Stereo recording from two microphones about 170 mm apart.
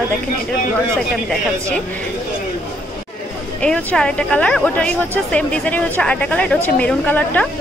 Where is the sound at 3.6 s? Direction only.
5° left (ahead or behind).